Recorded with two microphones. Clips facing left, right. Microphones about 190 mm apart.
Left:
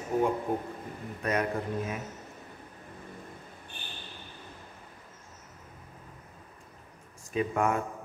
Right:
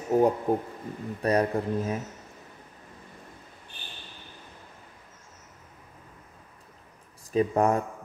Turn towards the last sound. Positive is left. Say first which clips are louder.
# right 5 dB
turn(degrees=-35)  # may be behind; listen again after turning